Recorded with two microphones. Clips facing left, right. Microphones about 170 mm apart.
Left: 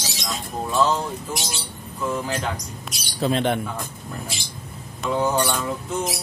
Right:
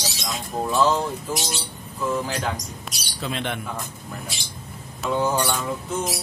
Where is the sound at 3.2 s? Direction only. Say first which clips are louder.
Left 7 dB; 40° left (ahead or behind).